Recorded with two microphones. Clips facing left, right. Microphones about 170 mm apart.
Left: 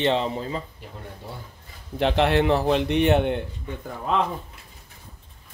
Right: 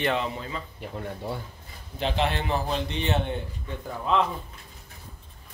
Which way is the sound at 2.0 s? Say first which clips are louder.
Left 7 dB; 65° left (ahead or behind).